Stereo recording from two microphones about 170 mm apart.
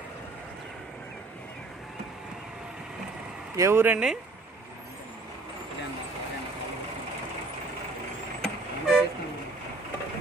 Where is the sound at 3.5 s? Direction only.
15° right (ahead or behind).